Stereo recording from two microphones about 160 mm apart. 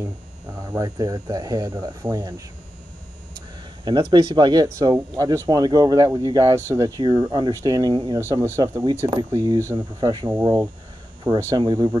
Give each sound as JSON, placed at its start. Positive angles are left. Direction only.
{"t": 0.0, "sound": "speech", "side_deg": -15}
{"t": 3.3, "sound": "a sound", "side_deg": -30}
{"t": 4.7, "sound": "speech", "side_deg": -20}
{"t": 8.2, "sound": "speech", "side_deg": -15}